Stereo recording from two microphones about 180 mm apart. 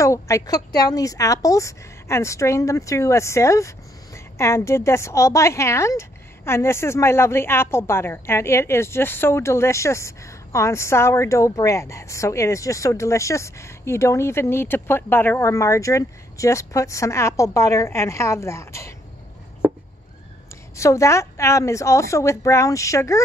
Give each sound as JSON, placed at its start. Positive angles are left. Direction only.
{"t": 0.0, "sound": "a woman's voice", "side_deg": 15}
{"t": 20.7, "sound": "a woman's voice", "side_deg": 15}